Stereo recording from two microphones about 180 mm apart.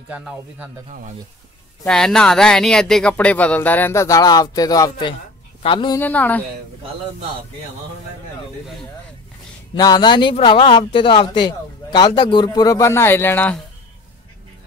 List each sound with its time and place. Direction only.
0.1 s speech: 5° right (ahead or behind)
0.8 s speech: 45° right (ahead or behind)
1.9 s a man's voice: 5° left (ahead or behind); by 5.9 s 30° left (ahead or behind)
5.9 s speech: 10° left (ahead or behind)
9.8 s a man's voice: 25° left (ahead or behind)